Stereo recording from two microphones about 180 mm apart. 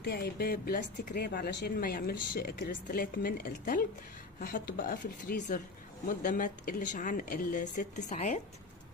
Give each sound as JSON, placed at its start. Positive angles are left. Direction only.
{"t": 0.0, "sound": "speech", "side_deg": 65}